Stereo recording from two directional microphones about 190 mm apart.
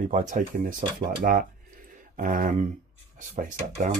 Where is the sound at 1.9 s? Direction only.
45° right (ahead or behind).